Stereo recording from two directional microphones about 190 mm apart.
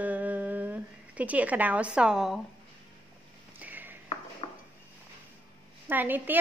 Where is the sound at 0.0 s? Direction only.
10° right (ahead or behind).